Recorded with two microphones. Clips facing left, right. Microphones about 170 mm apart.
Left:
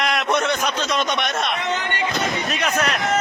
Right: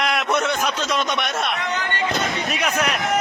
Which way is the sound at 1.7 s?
20° left (ahead or behind).